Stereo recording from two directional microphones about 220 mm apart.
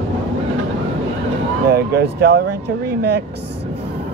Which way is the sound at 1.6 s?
45° right (ahead or behind).